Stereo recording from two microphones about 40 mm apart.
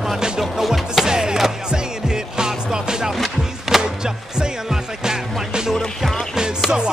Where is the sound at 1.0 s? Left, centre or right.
Centre.